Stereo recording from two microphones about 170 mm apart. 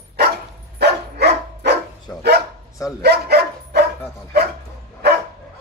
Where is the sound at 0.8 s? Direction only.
80° right.